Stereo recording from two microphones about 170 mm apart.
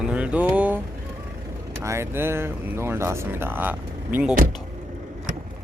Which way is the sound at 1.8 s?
15° right (ahead or behind).